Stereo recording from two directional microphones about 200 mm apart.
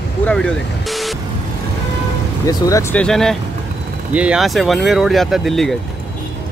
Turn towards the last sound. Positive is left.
turn(degrees=0)  # may be behind; listen again after turning